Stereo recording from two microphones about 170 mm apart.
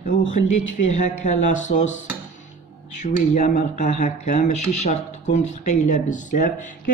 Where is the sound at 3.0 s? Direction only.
45° left (ahead or behind).